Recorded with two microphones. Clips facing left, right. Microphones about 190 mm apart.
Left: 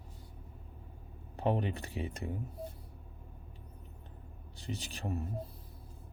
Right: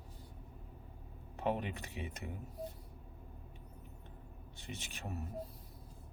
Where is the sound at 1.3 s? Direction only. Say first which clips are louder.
Left 4 dB; 30° left (ahead or behind).